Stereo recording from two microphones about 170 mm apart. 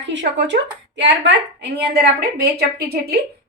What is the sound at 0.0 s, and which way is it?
A woman's voice, 90° right.